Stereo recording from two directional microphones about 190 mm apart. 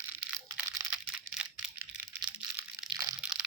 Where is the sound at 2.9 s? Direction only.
20° right (ahead or behind).